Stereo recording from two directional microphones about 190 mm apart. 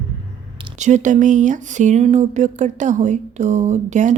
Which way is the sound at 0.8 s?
40° right (ahead or behind).